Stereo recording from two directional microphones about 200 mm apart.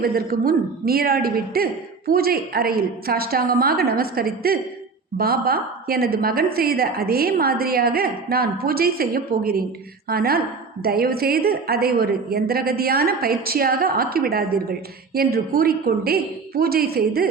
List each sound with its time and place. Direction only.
0.0 s a woman's voice: 50° right (ahead or behind)